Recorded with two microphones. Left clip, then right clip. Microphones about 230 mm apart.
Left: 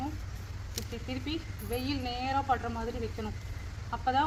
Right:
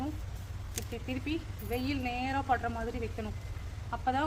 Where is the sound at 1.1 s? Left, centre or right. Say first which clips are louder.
Right 1 dB; right.